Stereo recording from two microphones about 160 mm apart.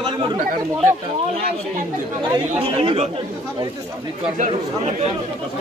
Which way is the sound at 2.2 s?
30° right (ahead or behind).